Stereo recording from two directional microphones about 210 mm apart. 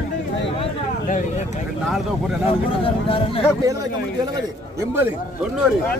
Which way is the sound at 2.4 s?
25° left (ahead or behind).